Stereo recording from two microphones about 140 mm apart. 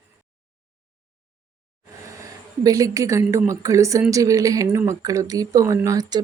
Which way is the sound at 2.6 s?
25° right (ahead or behind).